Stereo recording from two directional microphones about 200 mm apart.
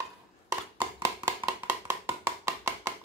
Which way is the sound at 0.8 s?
15° right (ahead or behind).